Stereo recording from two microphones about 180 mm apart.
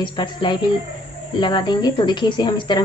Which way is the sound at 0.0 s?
25° left (ahead or behind).